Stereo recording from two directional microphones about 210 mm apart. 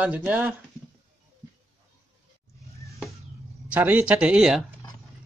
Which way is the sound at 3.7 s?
10° right (ahead or behind).